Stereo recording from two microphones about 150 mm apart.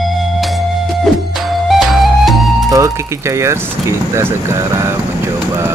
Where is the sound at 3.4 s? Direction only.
20° right (ahead or behind).